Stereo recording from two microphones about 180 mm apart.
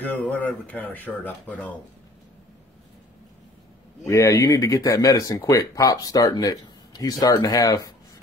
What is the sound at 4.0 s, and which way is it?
Speech, 15° left (ahead or behind).